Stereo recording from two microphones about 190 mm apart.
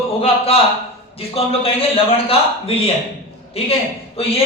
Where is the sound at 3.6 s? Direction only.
30° left (ahead or behind).